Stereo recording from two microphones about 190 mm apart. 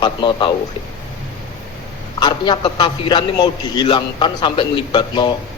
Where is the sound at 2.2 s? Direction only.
25° left (ahead or behind).